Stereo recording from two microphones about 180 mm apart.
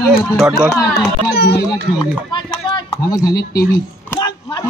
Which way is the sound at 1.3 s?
65° left (ahead or behind).